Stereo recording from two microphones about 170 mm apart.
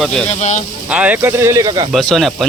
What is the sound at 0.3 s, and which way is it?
Speech, 45° left (ahead or behind).